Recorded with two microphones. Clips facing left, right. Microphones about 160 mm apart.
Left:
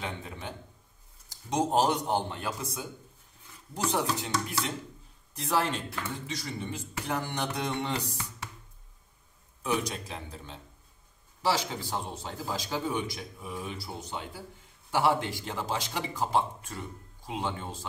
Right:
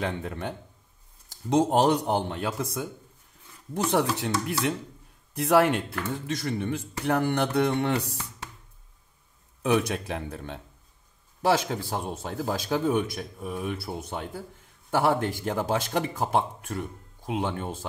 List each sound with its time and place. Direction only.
0.0 s speech: 65° right (ahead or behind)
1.7 s a man's voice: 70° right (ahead or behind)
9.6 s speech: 65° right (ahead or behind)